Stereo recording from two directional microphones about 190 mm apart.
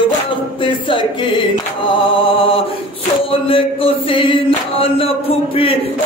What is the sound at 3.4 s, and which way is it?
Chant, 30° left (ahead or behind).